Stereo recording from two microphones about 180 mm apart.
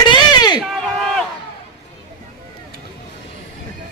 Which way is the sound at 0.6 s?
Centre (ahead or behind).